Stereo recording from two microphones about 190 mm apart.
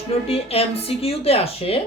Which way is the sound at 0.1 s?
30° left (ahead or behind).